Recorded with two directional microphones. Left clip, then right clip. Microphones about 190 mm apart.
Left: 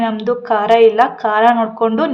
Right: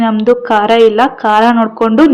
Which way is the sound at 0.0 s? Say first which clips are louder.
Right 7 dB; 20° right (ahead or behind).